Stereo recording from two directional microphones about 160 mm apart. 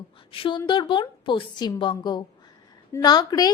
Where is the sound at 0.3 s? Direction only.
35° left (ahead or behind).